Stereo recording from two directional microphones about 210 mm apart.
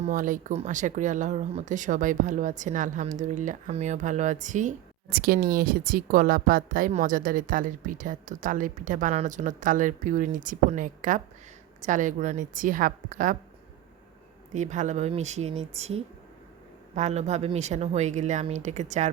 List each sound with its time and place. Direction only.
0.0 s speech: 40° right (ahead or behind)
14.5 s speech: 35° right (ahead or behind)